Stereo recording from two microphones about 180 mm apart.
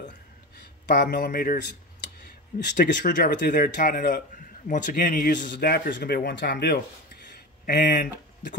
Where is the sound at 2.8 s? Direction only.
50° left (ahead or behind).